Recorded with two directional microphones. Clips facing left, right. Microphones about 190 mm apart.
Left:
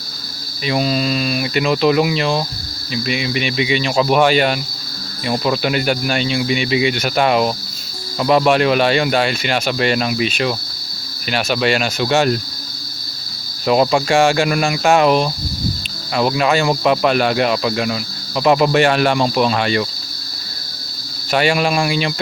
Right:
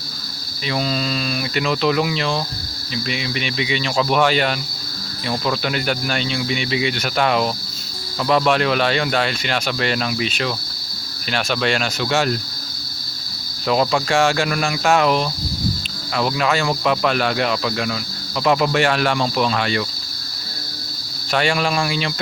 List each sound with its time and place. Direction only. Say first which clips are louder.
0.6 s speech: left 4 dB; 15° left (ahead or behind)
13.7 s speech: left 4 dB; 15° left (ahead or behind)
21.3 s speech: left 3 dB; 10° left (ahead or behind)